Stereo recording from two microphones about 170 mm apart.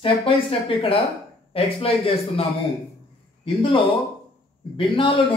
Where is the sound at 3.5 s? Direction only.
30° left (ahead or behind).